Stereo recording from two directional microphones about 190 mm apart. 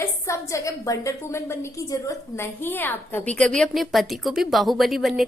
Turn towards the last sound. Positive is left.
turn(degrees=0)  # may be behind; listen again after turning